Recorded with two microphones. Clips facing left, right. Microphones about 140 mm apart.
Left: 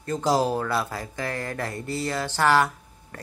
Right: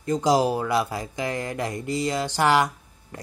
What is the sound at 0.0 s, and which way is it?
Speech, 15° right (ahead or behind).